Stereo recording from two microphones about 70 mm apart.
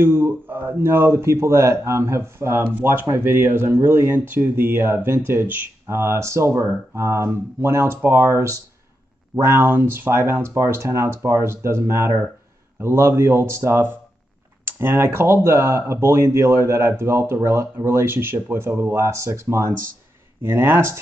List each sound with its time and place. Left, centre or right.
0.0 s speech: right